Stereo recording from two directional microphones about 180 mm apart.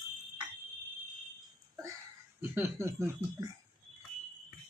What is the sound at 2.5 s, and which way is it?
Speech, 15° right (ahead or behind).